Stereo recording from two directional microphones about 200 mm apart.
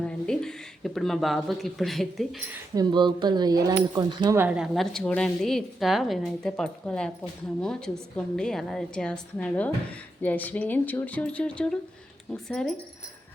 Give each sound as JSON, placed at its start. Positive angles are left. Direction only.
{"t": 0.0, "sound": "a woman's voice", "side_deg": 5}
{"t": 2.7, "sound": "speech", "side_deg": -20}
{"t": 4.4, "sound": "a woman's voice", "side_deg": -5}